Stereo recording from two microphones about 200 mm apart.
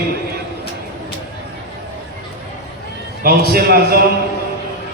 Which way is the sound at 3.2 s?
50° right (ahead or behind).